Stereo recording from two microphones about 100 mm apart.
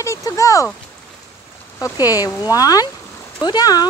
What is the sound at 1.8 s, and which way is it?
Speech, 40° left (ahead or behind).